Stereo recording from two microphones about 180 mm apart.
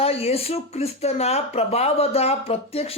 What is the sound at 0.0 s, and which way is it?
Speech, 35° left (ahead or behind).